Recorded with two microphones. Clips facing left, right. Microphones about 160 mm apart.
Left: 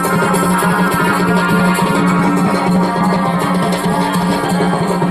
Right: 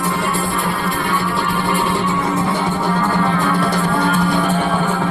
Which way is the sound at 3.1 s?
30° left (ahead or behind).